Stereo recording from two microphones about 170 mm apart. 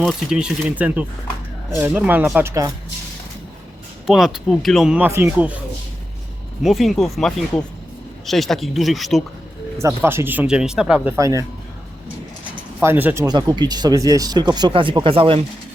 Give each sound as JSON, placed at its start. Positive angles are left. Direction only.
{"t": 0.0, "sound": "speech", "side_deg": -5}
{"t": 4.0, "sound": "speech", "side_deg": -5}
{"t": 6.6, "sound": "speech", "side_deg": 0}
{"t": 9.7, "sound": "speech", "side_deg": -15}
{"t": 11.2, "sound": "speech", "side_deg": -20}
{"t": 12.8, "sound": "speech", "side_deg": -10}
{"t": 13.2, "sound": "speech", "side_deg": -25}